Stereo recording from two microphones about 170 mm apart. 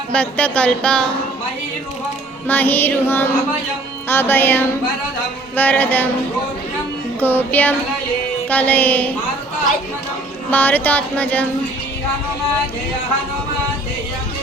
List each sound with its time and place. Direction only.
0.1 s speech: 5° left (ahead or behind)
2.5 s speech: 10° left (ahead or behind)
7.2 s speech: 10° left (ahead or behind)
10.5 s speech: 10° left (ahead or behind)